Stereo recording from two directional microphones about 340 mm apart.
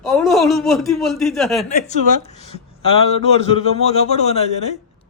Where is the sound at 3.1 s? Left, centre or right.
Centre.